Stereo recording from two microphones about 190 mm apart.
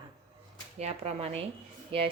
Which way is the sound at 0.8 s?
35° right (ahead or behind).